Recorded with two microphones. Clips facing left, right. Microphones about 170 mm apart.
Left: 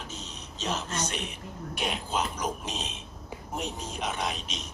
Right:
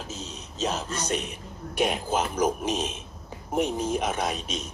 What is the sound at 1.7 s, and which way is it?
Speech, 50° right (ahead or behind).